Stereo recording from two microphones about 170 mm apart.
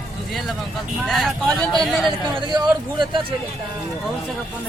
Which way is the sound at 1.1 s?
Centre (ahead or behind).